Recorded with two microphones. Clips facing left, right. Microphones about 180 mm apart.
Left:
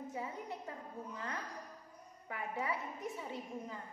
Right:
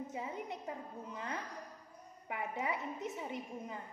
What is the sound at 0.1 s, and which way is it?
A woman's voice, 20° right (ahead or behind).